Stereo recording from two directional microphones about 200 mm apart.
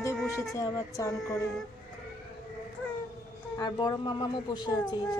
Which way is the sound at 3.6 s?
20° left (ahead or behind).